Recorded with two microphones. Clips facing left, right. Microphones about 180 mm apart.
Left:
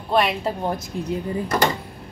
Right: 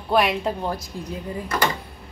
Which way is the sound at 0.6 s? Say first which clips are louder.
Left 2 dB; 20° left (ahead or behind).